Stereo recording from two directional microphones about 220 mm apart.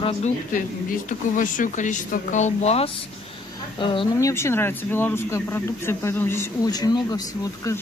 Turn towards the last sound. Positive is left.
turn(degrees=15)  # may be behind; listen again after turning